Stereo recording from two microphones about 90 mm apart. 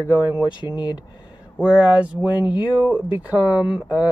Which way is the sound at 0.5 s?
60° left (ahead or behind).